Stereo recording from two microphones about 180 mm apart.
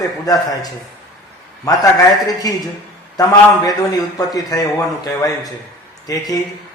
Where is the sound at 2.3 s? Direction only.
20° left (ahead or behind).